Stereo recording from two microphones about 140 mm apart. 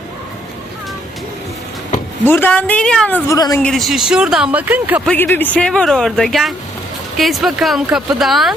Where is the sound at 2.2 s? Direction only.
15° left (ahead or behind).